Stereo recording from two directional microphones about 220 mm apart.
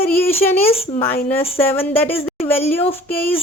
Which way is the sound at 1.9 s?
10° left (ahead or behind).